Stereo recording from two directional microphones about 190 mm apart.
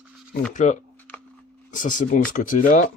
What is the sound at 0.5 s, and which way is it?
A man's voice, 40° left (ahead or behind).